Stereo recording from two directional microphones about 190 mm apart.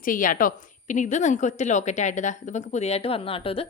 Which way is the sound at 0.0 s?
45° left (ahead or behind).